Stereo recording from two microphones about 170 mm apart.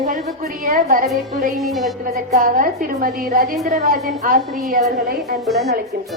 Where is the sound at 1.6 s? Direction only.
Centre (ahead or behind).